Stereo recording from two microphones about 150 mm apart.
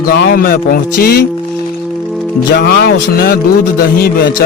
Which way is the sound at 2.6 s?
90° left.